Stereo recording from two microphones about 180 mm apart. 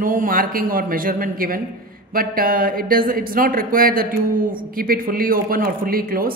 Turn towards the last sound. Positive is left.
turn(degrees=-55)  # may be behind; listen again after turning